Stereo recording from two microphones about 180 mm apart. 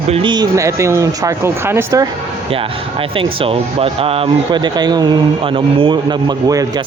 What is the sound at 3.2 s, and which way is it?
Speech, 30° right (ahead or behind).